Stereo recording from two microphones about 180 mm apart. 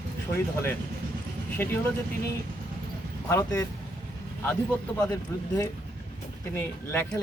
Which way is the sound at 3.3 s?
15° left (ahead or behind).